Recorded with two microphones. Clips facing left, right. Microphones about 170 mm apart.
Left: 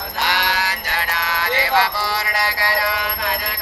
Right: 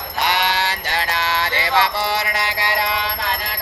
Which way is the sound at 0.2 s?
20° right (ahead or behind).